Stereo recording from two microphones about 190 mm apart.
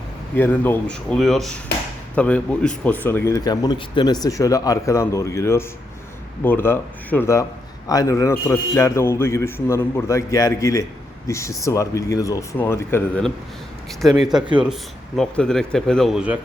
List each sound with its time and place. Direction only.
0.3 s speech: 10° left (ahead or behind)
14.0 s speech: centre (ahead or behind)